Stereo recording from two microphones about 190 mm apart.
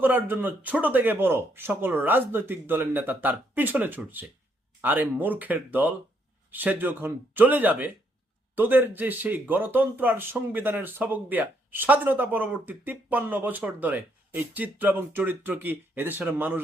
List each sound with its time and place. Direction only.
0.0 s speech: 10° right (ahead or behind)